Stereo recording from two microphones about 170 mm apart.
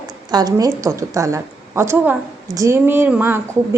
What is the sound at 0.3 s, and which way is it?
A woman's voice, 20° right (ahead or behind).